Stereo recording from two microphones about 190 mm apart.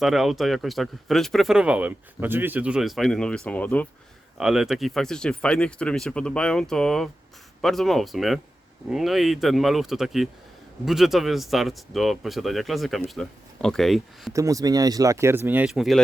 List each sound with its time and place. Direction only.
0.0 s speech: centre (ahead or behind)
4.4 s speech: centre (ahead or behind)
14.3 s speech: 15° right (ahead or behind); by 16.0 s centre (ahead or behind)